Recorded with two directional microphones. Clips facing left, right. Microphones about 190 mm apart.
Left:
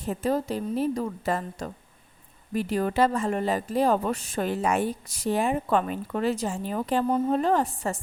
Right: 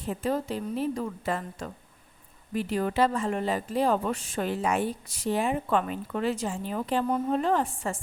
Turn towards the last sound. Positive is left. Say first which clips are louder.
# left 2 dB
turn(degrees=40)  # may be behind; listen again after turning